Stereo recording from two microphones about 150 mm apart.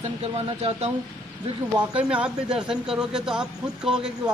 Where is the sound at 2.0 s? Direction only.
5° right (ahead or behind).